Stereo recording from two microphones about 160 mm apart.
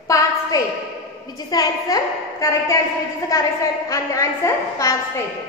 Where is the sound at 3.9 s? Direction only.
20° left (ahead or behind).